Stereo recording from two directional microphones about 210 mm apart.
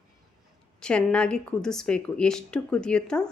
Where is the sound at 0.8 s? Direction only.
5° left (ahead or behind).